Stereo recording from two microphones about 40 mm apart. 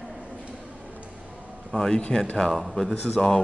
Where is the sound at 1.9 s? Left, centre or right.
Left.